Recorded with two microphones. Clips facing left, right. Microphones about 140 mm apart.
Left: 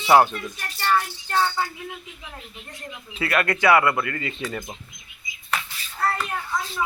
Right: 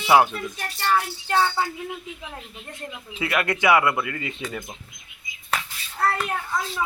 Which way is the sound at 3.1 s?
10° right (ahead or behind).